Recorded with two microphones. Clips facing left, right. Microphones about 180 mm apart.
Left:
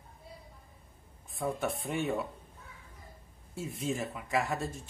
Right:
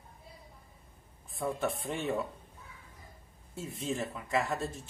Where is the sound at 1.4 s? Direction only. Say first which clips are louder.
Even; centre (ahead or behind).